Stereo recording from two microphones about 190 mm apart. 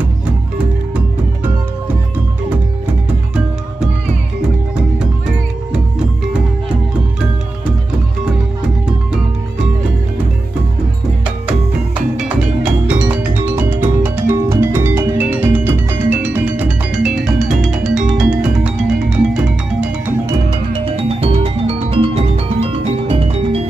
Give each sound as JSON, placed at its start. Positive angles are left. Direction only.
{"t": 0.9, "sound": "music", "side_deg": -10}
{"t": 4.9, "sound": "music", "side_deg": -5}
{"t": 8.6, "sound": "music", "side_deg": -5}
{"t": 11.2, "sound": "music", "side_deg": -5}
{"t": 20.2, "sound": "music", "side_deg": -25}